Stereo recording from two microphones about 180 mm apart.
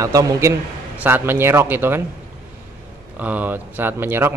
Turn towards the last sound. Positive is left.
turn(degrees=-10)  # may be behind; listen again after turning